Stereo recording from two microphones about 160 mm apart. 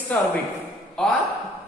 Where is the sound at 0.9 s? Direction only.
5° left (ahead or behind).